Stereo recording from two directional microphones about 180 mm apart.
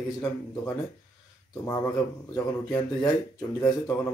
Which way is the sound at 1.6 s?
20° left (ahead or behind).